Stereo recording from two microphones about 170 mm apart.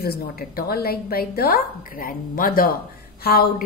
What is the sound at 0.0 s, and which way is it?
A woman's voice, 65° left (ahead or behind).